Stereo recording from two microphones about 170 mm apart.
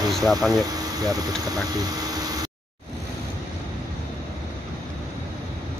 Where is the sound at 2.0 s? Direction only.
20° right (ahead or behind).